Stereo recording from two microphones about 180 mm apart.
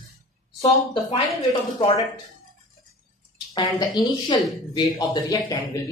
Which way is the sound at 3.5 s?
25° left (ahead or behind).